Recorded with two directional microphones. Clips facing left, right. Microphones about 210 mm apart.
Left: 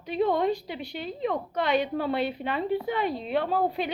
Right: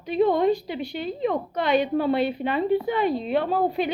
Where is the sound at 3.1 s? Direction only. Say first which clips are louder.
Right 6 dB; 35° right (ahead or behind).